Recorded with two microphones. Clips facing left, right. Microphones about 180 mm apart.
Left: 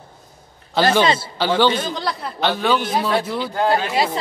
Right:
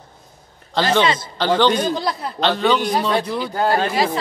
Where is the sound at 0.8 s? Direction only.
5° left (ahead or behind).